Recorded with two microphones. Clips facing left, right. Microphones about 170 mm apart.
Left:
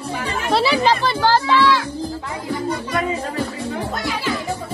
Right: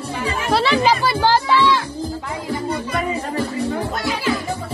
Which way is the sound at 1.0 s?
15° right (ahead or behind).